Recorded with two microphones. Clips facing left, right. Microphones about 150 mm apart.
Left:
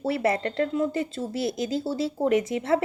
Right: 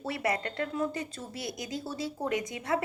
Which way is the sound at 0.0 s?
30° left (ahead or behind).